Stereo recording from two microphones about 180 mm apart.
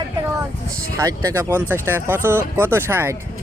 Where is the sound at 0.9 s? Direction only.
15° right (ahead or behind).